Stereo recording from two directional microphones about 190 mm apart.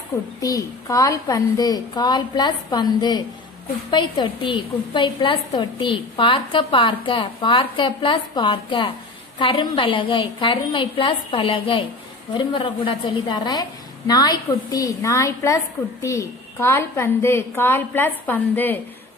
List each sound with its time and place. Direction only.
0.4 s a woman's voice: 20° left (ahead or behind)